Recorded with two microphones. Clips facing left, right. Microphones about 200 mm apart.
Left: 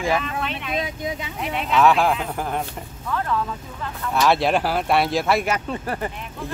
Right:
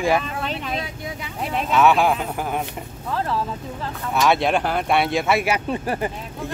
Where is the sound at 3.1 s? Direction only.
30° right (ahead or behind).